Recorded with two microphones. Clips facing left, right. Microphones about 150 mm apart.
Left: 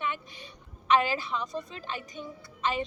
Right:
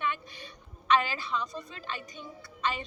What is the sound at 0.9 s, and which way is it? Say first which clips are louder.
A woman's voice: left 2 dB; 20° left (ahead or behind).